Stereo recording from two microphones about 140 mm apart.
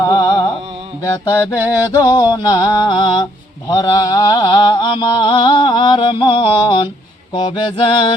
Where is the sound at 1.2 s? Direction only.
25° left (ahead or behind).